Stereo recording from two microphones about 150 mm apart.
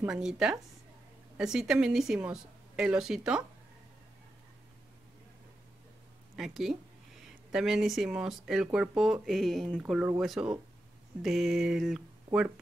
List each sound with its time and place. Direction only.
0.1 s a woman's voice: 5° right (ahead or behind)
6.3 s a woman's voice: centre (ahead or behind)
12.3 s speech: 10° right (ahead or behind)